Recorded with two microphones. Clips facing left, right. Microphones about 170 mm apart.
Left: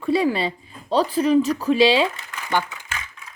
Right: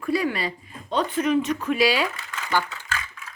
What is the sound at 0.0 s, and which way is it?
Speech, 25° left (ahead or behind).